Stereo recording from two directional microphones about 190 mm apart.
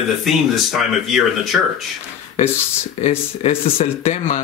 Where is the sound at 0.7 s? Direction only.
Centre (ahead or behind).